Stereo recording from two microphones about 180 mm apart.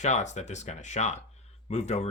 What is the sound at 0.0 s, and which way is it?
Speech, 40° left (ahead or behind).